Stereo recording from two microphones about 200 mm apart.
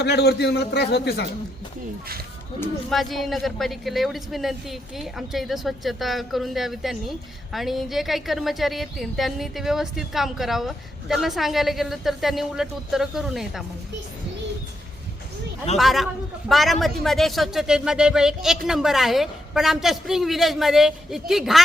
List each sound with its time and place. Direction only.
0.0 s a man's voice: 55° left (ahead or behind)
2.9 s a woman's voice: centre (ahead or behind)
15.8 s a woman's voice: centre (ahead or behind)